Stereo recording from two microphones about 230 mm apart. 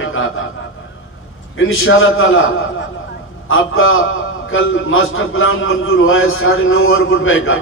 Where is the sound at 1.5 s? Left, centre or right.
Left.